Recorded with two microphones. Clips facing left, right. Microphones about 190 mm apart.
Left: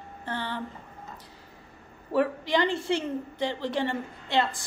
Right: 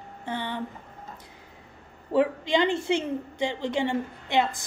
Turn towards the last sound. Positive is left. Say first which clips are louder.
# right 2 dB
turn(degrees=-15)  # may be behind; listen again after turning